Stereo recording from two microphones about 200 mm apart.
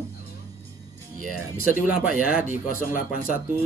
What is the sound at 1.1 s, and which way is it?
Speech, 45° left (ahead or behind).